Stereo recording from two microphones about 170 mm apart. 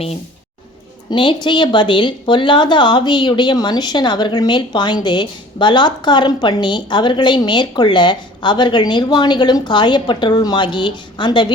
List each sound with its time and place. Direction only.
1.1 s a woman's voice: 30° left (ahead or behind)